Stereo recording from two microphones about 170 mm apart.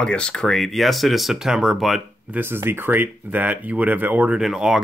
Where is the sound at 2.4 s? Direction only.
15° right (ahead or behind).